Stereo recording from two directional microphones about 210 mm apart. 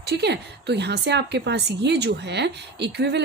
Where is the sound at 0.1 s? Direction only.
55° right (ahead or behind).